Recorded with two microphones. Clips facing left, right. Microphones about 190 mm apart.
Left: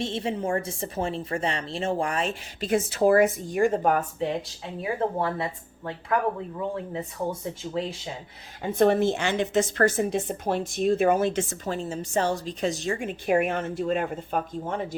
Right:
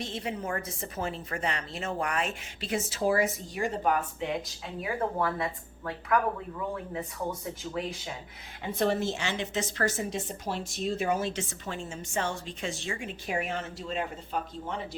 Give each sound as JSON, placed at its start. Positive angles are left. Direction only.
{"t": 0.0, "sound": "a woman's voice", "side_deg": 25}
{"t": 2.6, "sound": "a woman's voice", "side_deg": 50}
{"t": 4.8, "sound": "a woman's voice", "side_deg": 25}
{"t": 8.6, "sound": "a woman's voice", "side_deg": 50}
{"t": 11.6, "sound": "a woman's voice", "side_deg": 40}